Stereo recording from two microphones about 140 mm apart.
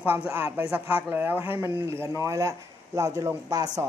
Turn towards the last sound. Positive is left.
turn(degrees=-25)  # may be behind; listen again after turning